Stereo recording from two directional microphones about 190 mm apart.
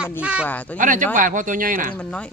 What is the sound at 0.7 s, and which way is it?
Speech, 45° right (ahead or behind).